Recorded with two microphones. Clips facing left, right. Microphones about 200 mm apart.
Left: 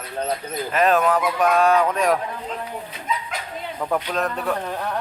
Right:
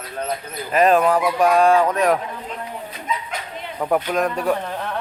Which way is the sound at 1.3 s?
30° right (ahead or behind).